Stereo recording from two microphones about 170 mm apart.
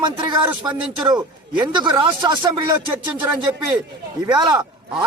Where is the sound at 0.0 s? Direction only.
25° right (ahead or behind).